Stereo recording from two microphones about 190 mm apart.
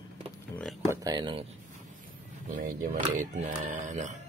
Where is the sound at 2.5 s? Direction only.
45° right (ahead or behind).